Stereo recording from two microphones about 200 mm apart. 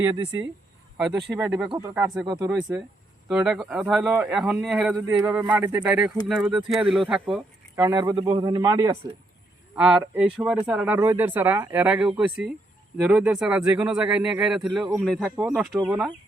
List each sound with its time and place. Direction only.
0.0 s a man's voice: 20° right (ahead or behind)
1.4 s a man's voice: 5° right (ahead or behind)
2.6 s a man's voice: 5° right (ahead or behind)
7.8 s a man's voice: 15° right (ahead or behind)
9.7 s a man's voice: 5° right (ahead or behind)